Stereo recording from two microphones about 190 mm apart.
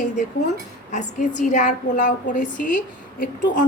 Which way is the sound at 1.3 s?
40° left (ahead or behind).